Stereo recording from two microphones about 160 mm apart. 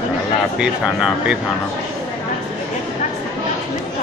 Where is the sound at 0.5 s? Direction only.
5° right (ahead or behind).